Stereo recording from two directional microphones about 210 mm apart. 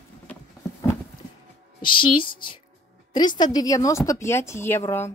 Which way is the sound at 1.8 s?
25° left (ahead or behind).